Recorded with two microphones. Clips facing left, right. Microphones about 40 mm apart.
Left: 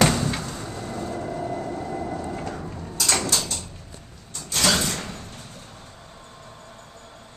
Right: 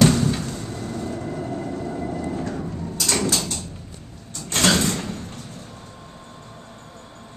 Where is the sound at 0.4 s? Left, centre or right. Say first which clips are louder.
Right 3 dB; centre.